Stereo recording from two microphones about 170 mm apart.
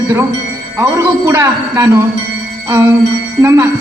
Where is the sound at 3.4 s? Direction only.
15° right (ahead or behind).